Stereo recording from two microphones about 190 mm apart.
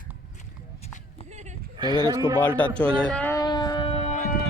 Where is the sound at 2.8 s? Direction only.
5° left (ahead or behind).